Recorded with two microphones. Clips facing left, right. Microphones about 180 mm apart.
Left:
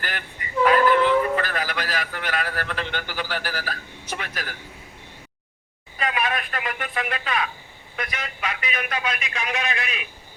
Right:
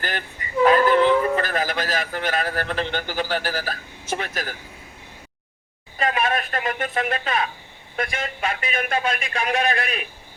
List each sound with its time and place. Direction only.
0.0 s a man's voice: 35° right (ahead or behind)
6.0 s speech: 45° right (ahead or behind)